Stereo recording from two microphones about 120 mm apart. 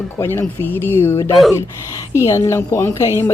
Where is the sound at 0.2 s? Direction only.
20° left (ahead or behind).